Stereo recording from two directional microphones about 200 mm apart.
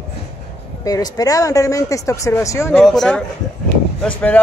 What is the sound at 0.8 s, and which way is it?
Speech, 20° left (ahead or behind).